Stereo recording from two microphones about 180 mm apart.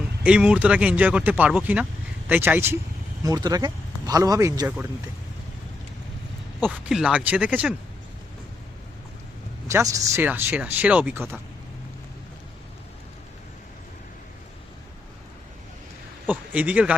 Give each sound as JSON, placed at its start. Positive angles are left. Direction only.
{"t": 0.2, "sound": "speech", "side_deg": -5}
{"t": 6.6, "sound": "speech", "side_deg": -5}
{"t": 9.6, "sound": "speech", "side_deg": -15}
{"t": 16.2, "sound": "speech", "side_deg": -10}